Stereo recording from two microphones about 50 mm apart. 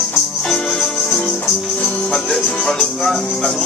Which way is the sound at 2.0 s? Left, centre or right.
Centre.